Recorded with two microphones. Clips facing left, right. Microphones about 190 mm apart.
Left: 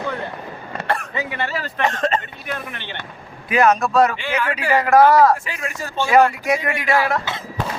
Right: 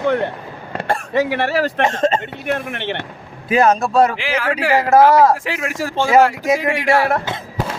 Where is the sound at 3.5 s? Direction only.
30° right (ahead or behind).